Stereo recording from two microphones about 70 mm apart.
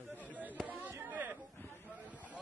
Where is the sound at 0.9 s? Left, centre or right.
Right.